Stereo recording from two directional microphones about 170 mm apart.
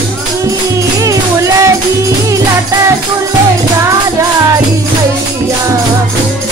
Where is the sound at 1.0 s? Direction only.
20° right (ahead or behind).